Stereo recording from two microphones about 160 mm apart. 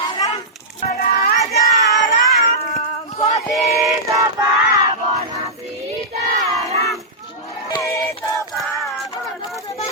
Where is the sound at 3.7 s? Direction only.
20° right (ahead or behind).